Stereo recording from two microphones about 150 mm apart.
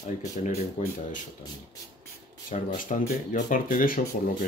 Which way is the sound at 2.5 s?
50° left (ahead or behind).